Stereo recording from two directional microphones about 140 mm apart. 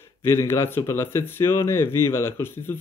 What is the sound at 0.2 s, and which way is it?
Speech, 20° left (ahead or behind).